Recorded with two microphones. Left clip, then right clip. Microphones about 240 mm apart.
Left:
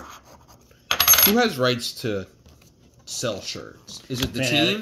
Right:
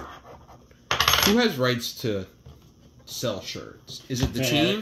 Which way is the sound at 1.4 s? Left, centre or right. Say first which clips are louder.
Left 2 dB; centre.